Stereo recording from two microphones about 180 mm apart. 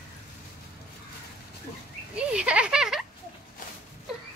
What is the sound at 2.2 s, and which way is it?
Speech, 5° right (ahead or behind).